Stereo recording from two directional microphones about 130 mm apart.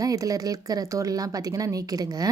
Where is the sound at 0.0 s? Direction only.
25° right (ahead or behind).